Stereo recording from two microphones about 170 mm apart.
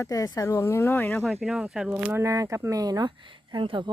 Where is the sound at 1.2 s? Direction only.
Centre (ahead or behind).